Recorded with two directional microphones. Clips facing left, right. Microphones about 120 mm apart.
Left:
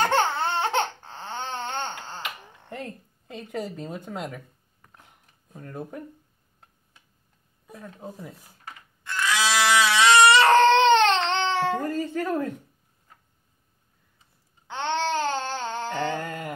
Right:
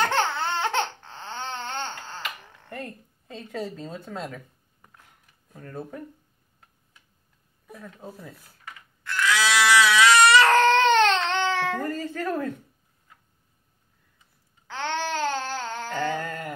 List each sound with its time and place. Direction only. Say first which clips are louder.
0.4 s baby cry: left 1 dB; 30° left (ahead or behind)
2.1 s finger snapping: even; 20° left (ahead or behind)
4.9 s a sound: left 4 dB; 20° left (ahead or behind)
8.0 s speech: left 2 dB; 15° left (ahead or behind)
9.0 s crying: right 1 dB; 20° left (ahead or behind)
11.8 s speech: left 2 dB; 15° left (ahead or behind)
14.7 s babbling: left 3 dB; 20° left (ahead or behind)
16.2 s speech: even; 15° left (ahead or behind)